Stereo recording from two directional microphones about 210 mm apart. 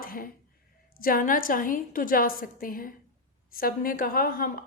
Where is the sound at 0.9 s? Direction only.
45° left (ahead or behind).